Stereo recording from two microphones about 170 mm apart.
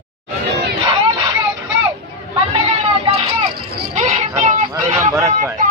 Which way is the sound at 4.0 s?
40° right (ahead or behind).